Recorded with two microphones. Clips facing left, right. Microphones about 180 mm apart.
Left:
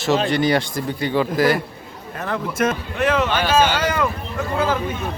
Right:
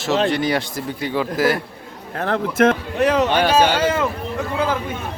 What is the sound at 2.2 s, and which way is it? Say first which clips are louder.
Speech: right 5 dB; 60° right (ahead or behind).